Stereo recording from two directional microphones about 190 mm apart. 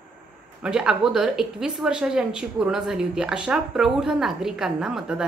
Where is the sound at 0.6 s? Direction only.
5° right (ahead or behind).